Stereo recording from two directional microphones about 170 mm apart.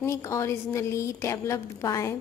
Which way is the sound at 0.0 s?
15° left (ahead or behind).